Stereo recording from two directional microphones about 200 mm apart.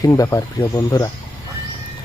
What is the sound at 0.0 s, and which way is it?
Speech, 15° left (ahead or behind).